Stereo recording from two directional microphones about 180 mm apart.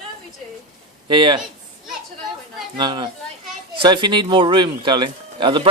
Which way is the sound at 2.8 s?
25° right (ahead or behind).